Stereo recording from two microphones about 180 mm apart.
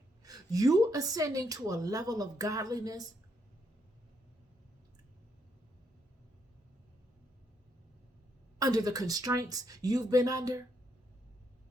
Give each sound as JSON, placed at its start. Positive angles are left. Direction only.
{"t": 0.2, "sound": "a woman's voice", "side_deg": -20}
{"t": 8.5, "sound": "a woman's voice", "side_deg": -20}